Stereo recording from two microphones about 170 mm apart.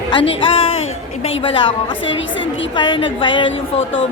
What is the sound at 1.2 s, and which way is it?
Music, 35° left (ahead or behind).